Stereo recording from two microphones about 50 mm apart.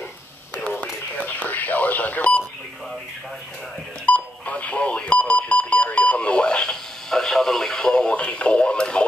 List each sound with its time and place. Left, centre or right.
0.6 s a sound: left
1.1 s radio: left
4.0 s telephone dialing: left